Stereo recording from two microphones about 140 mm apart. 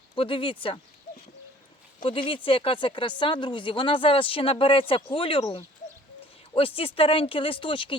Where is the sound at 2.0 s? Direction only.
35° left (ahead or behind).